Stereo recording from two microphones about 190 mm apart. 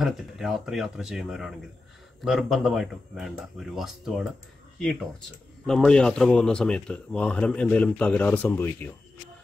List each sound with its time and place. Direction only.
0.0 s speech: centre (ahead or behind)
5.7 s speech: 5° left (ahead or behind)